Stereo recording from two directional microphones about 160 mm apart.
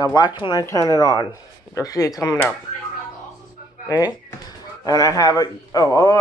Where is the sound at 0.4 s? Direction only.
25° left (ahead or behind).